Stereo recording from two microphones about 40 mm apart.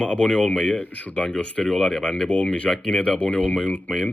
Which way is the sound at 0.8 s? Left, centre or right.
Left.